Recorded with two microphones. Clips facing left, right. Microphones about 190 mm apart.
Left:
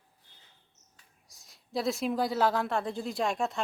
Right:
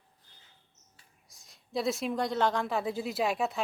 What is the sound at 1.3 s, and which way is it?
A man's voice, centre (ahead or behind).